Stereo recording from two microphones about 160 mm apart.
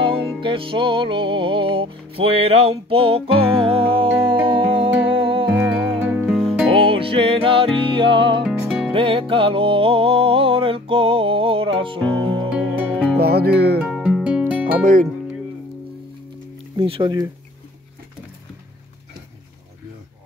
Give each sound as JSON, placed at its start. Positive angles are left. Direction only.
{"t": 0.4, "sound": "music", "side_deg": -30}
{"t": 5.5, "sound": "music", "side_deg": -10}
{"t": 6.7, "sound": "music", "side_deg": -35}
{"t": 8.5, "sound": "music", "side_deg": -5}
{"t": 8.9, "sound": "music", "side_deg": -35}
{"t": 12.4, "sound": "music", "side_deg": -10}
{"t": 13.2, "sound": "music", "side_deg": -75}
{"t": 13.8, "sound": "music", "side_deg": -5}
{"t": 14.8, "sound": "speech", "side_deg": -55}
{"t": 16.7, "sound": "speech", "side_deg": -30}